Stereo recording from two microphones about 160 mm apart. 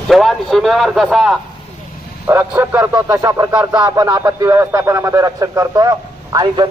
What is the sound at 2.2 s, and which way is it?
A man's voice, 10° right (ahead or behind).